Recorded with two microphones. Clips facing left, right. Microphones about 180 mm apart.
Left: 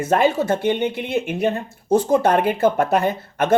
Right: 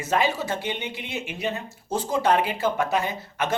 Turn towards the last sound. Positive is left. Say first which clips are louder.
# left 8 dB
turn(degrees=55)  # may be behind; listen again after turning